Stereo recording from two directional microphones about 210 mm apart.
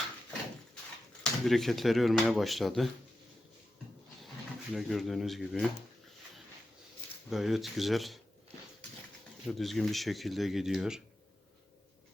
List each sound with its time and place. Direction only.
1.2 s speech: centre (ahead or behind)
4.7 s speech: centre (ahead or behind)
7.3 s speech: centre (ahead or behind)
9.5 s speech: centre (ahead or behind)